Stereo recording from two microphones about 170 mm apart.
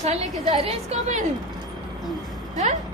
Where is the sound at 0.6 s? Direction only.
35° right (ahead or behind).